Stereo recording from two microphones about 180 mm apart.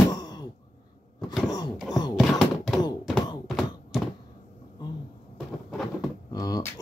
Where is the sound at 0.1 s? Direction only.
20° left (ahead or behind).